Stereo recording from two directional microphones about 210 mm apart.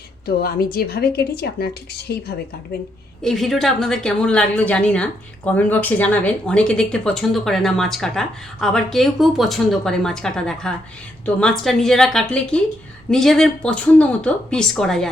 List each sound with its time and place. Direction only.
0.3 s a woman's voice: 45° left (ahead or behind)
3.2 s speech: centre (ahead or behind)